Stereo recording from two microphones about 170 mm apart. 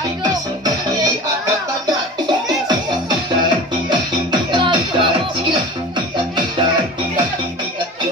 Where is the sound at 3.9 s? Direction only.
25° right (ahead or behind).